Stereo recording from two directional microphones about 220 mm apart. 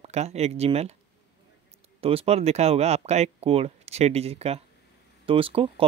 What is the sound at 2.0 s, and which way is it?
Speech, 25° right (ahead or behind).